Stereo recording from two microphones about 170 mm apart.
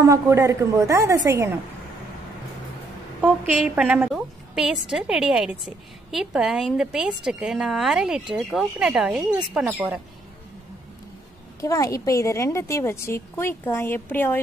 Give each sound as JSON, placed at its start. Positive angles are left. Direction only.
{"t": 0.0, "sound": "a woman's voice", "side_deg": -20}
{"t": 3.2, "sound": "a woman's voice", "side_deg": -10}
{"t": 11.6, "sound": "a woman's voice", "side_deg": 20}